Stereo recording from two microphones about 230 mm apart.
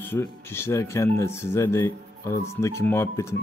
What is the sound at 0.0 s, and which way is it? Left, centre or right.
A man's voice, centre.